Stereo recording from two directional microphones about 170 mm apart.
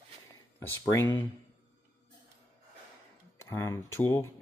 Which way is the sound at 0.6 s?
15° left (ahead or behind).